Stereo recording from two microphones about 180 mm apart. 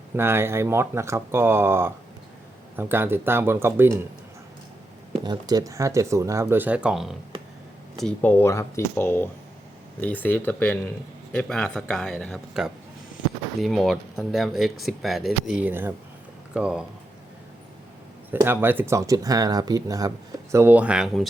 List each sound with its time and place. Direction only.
0.2 s speech: 15° right (ahead or behind)
5.1 s speech: 25° right (ahead or behind); by 16.8 s 5° right (ahead or behind)
18.3 s speech: 10° right (ahead or behind)